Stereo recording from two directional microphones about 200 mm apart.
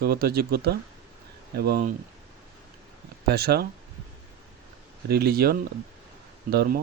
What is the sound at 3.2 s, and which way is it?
Speech, 50° right (ahead or behind).